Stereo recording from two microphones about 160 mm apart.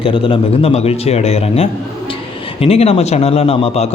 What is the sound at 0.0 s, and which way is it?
Speech, 35° left (ahead or behind).